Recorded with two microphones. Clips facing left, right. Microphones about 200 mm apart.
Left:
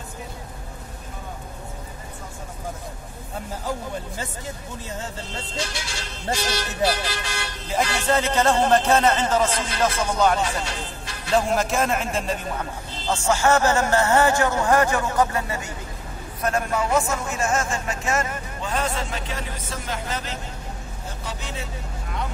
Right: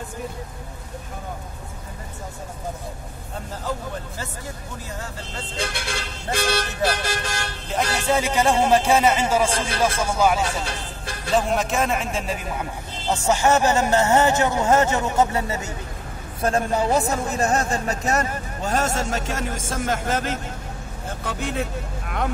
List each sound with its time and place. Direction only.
5.6 s vehicle: 55° right (ahead or behind)
7.7 s a man's voice: 10° right (ahead or behind)
13.3 s a man's voice: 15° right (ahead or behind); by 22.3 s 60° right (ahead or behind)